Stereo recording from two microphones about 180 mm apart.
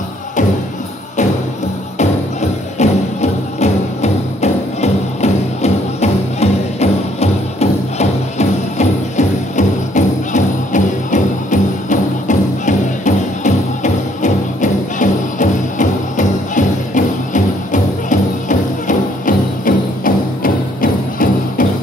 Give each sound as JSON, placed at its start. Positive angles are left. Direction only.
{"t": 2.0, "sound": "music", "side_deg": 40}